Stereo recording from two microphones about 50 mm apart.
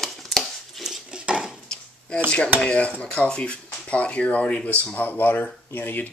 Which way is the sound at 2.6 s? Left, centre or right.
Left.